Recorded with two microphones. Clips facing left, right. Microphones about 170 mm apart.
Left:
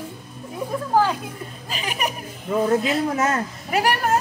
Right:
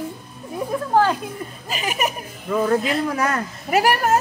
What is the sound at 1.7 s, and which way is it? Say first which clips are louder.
Speech: right 3 dB; 5° right (ahead or behind).